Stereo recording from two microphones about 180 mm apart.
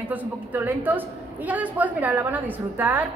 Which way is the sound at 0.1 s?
10° right (ahead or behind).